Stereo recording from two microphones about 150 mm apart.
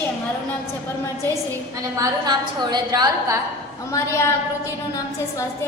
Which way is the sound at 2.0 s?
30° right (ahead or behind).